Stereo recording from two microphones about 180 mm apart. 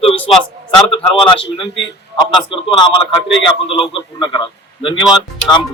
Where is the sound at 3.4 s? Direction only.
30° left (ahead or behind).